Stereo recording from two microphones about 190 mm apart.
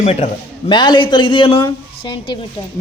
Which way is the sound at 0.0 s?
35° left (ahead or behind).